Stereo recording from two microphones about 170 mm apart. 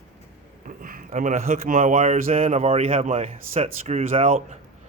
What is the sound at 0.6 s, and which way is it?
Speech, 55° right (ahead or behind).